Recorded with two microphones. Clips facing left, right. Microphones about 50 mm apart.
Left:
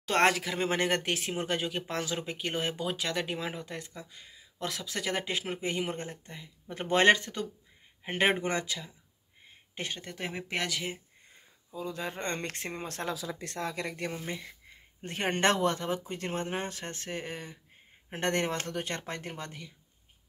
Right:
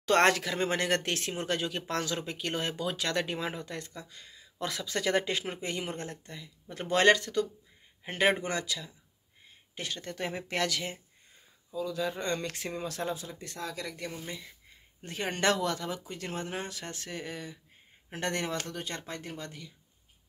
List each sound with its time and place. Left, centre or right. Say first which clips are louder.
0.0 s speech: right 2 dB; centre
0.7 s speech: left 1 dB; left
4.6 s speech: right 2 dB; centre; by 10.0 s left
10.0 s speech: right 2 dB; centre
11.7 s speech: right 3 dB; left
13.0 s speech: even; left
13.6 s speech: left 3 dB; left